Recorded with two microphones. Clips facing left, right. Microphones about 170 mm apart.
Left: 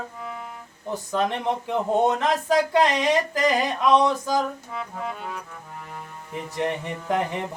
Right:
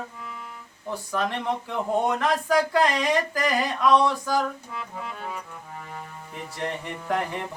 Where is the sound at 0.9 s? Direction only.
20° left (ahead or behind).